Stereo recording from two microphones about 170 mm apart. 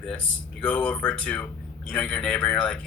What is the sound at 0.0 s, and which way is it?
Speech, 5° left (ahead or behind).